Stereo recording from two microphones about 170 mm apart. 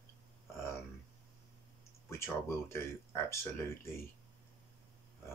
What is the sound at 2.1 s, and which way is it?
Speech, 15° left (ahead or behind).